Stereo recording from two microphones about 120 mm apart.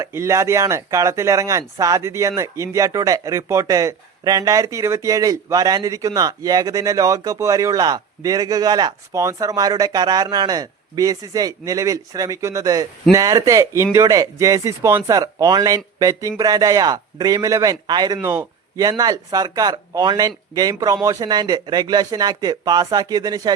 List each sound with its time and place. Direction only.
0.0 s speech: 25° right (ahead or behind)
18.2 s speech: 20° right (ahead or behind)
18.8 s speech: 35° right (ahead or behind)